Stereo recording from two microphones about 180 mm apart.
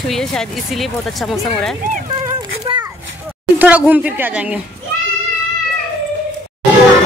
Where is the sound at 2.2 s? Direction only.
20° right (ahead or behind).